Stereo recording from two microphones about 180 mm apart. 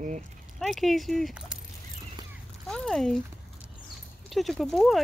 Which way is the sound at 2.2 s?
25° right (ahead or behind).